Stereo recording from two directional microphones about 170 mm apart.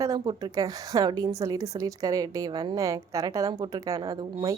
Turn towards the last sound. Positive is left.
turn(degrees=-20)  # may be behind; listen again after turning